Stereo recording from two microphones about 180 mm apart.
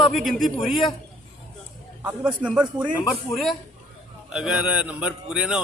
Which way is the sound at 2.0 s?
10° right (ahead or behind).